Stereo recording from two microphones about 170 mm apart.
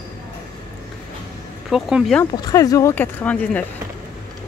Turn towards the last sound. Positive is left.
turn(degrees=10)  # may be behind; listen again after turning